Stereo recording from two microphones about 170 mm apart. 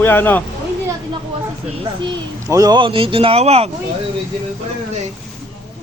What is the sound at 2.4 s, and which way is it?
Speech, 20° right (ahead or behind).